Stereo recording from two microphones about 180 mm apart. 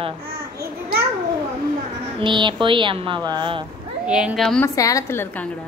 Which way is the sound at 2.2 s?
25° right (ahead or behind).